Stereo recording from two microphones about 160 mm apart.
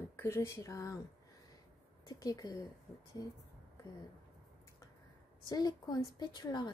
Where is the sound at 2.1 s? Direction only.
25° left (ahead or behind).